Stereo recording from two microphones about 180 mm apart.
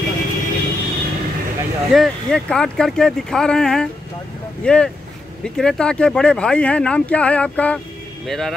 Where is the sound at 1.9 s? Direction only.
5° left (ahead or behind).